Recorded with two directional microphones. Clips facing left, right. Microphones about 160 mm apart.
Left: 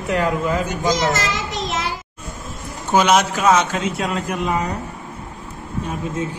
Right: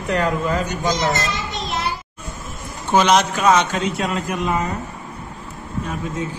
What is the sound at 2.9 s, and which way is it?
Speech, 10° left (ahead or behind).